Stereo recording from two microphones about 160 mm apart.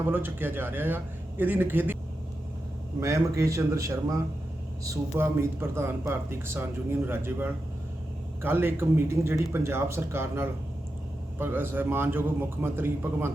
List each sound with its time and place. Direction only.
0.0 s speech: 15° right (ahead or behind)
3.0 s a man's voice: 20° right (ahead or behind)